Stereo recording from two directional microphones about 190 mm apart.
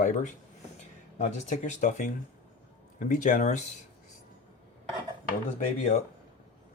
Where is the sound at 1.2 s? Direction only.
40° left (ahead or behind).